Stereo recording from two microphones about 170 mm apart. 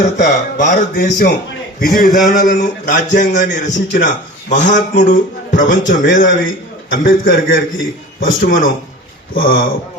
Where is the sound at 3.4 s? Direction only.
90° left.